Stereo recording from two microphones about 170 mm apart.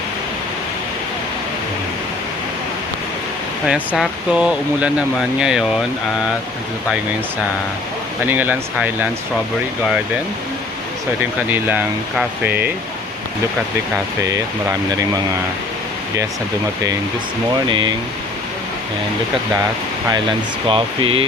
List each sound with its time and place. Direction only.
3.7 s speech: centre (ahead or behind)
8.3 s speech: 10° right (ahead or behind)
11.5 s speech: 10° right (ahead or behind)
17.7 s speech: 25° right (ahead or behind)
20.7 s speech: 30° right (ahead or behind)